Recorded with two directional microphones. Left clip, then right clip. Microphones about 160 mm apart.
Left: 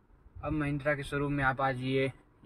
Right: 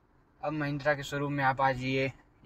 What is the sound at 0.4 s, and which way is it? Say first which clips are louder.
Speech: right 1 dB; centre (ahead or behind).